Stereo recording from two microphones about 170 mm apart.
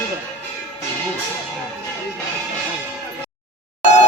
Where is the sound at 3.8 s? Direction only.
40° left (ahead or behind).